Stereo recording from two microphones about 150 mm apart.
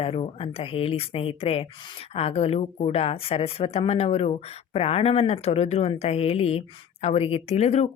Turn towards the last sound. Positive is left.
turn(degrees=45)  # may be behind; listen again after turning